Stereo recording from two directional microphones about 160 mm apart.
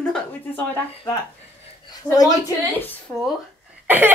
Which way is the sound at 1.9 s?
25° left (ahead or behind).